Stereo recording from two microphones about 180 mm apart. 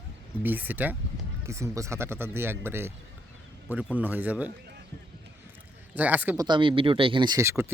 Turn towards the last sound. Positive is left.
turn(degrees=-15)  # may be behind; listen again after turning